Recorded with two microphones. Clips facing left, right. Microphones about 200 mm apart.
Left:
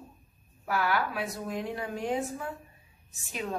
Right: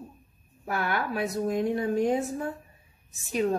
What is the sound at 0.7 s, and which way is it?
A woman's voice, 45° right (ahead or behind).